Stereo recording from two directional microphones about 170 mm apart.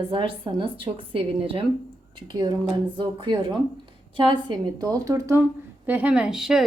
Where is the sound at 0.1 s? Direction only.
30° right (ahead or behind).